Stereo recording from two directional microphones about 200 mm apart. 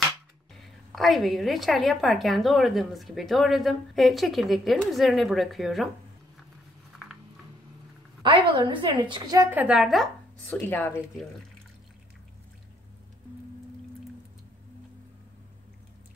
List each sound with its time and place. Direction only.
0.6 s a woman's voice: centre (ahead or behind)
8.2 s a sound: 25° right (ahead or behind)
8.8 s a woman's voice: 25° right (ahead or behind); by 10.0 s centre (ahead or behind)
10.5 s speech: 10° left (ahead or behind)